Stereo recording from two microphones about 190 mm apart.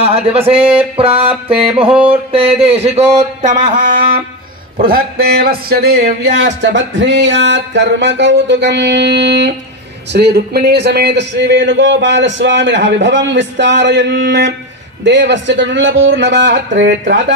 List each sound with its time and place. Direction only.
0.0 s speech: 30° right (ahead or behind)
0.7 s a sound: 30° right (ahead or behind)
3.7 s music: 45° right (ahead or behind)
4.7 s a man's voice: 50° right (ahead or behind); by 17.2 s 65° right (ahead or behind)